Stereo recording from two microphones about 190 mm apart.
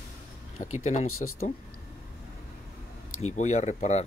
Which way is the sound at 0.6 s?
35° left (ahead or behind).